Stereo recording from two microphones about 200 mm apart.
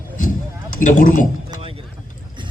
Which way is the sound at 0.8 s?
40° left (ahead or behind).